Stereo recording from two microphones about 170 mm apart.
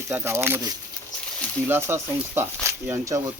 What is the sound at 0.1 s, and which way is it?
Speech, 15° right (ahead or behind).